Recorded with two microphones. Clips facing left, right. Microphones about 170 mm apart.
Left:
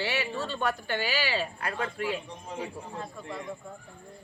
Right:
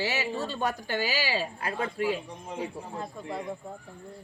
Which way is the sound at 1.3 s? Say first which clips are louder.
Even; 15° right (ahead or behind).